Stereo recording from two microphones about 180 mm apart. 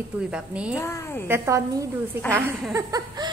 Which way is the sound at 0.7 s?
15° left (ahead or behind).